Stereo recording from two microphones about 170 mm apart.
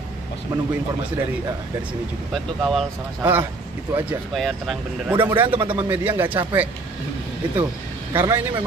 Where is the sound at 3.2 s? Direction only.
10° right (ahead or behind).